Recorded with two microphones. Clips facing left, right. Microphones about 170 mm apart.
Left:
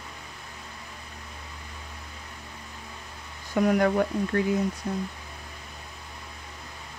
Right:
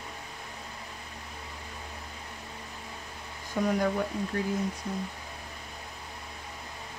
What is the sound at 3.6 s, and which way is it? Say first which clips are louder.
Speech: left 5 dB; 65° left (ahead or behind).